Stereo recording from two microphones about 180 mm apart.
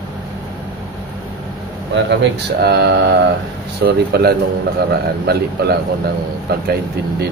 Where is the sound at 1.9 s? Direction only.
80° right; by 5.4 s 60° right (ahead or behind).